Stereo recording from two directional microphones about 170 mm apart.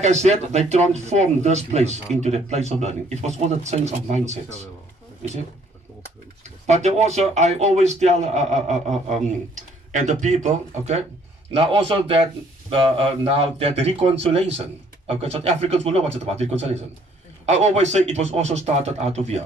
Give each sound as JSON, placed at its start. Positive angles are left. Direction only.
{"t": 0.0, "sound": "speech", "side_deg": -40}
{"t": 6.6, "sound": "a man's voice", "side_deg": -40}